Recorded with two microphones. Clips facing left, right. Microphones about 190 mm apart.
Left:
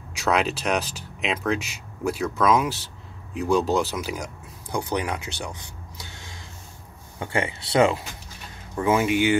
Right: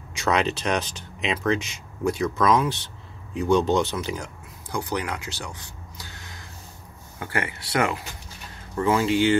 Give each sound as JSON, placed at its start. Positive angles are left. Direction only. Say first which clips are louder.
{"t": 0.2, "sound": "speech", "louder": "even", "side_deg": 5}